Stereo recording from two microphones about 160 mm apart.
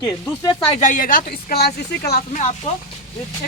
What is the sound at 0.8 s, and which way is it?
Speech, 60° left (ahead or behind).